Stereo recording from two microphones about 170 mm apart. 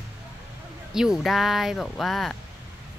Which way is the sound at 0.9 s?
5° right (ahead or behind).